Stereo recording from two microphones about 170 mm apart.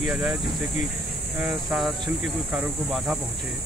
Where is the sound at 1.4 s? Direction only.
Centre (ahead or behind).